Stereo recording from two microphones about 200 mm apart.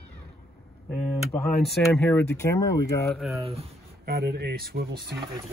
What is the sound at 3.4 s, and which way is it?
Speech, 30° right (ahead or behind).